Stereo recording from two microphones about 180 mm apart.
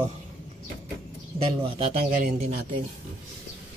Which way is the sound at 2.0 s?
45° right (ahead or behind).